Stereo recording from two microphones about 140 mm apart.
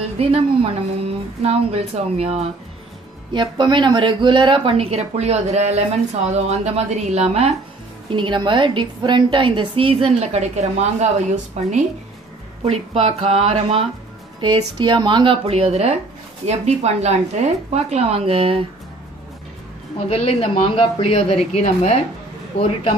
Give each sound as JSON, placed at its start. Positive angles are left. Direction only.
{"t": 0.0, "sound": "a woman's voice", "side_deg": -45}
{"t": 3.3, "sound": "a woman's voice", "side_deg": -35}
{"t": 8.1, "sound": "a woman's voice", "side_deg": -35}
{"t": 20.1, "sound": "speech", "side_deg": 45}